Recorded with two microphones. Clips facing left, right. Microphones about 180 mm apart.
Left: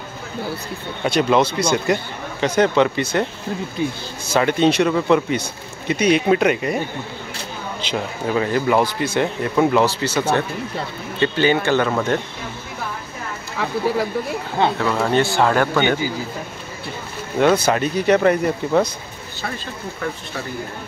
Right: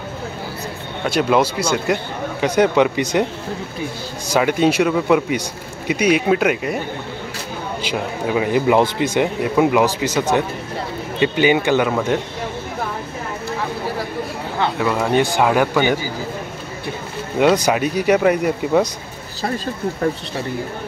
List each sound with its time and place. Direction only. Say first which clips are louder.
1.0 s speech: even; 5° right (ahead or behind)
4.3 s speech: even; 10° right (ahead or behind)
7.8 s speech: right 1 dB; 10° right (ahead or behind)
14.8 s speech: right 1 dB; 10° right (ahead or behind)
17.4 s speech: right 1 dB; 10° right (ahead or behind)
19.4 s speech: right 7 dB; 35° right (ahead or behind)